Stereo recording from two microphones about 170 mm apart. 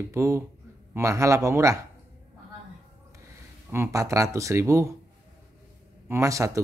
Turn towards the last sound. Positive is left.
turn(degrees=-20)  # may be behind; listen again after turning